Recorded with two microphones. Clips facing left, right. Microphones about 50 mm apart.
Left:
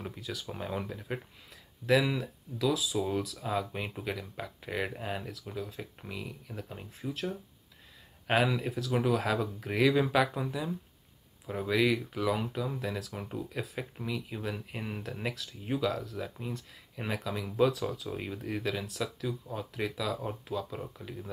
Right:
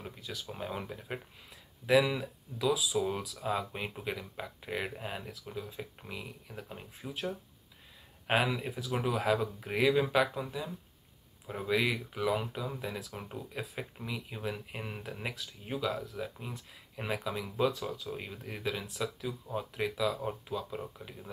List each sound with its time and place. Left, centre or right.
0.0 s speech: centre
2.1 s speech: centre
2.8 s speech: centre